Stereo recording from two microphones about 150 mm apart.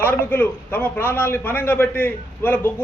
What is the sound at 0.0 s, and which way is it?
A man's voice, 15° left (ahead or behind).